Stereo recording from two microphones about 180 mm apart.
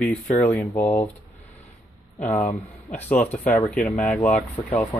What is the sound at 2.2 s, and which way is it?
Speech, 10° left (ahead or behind).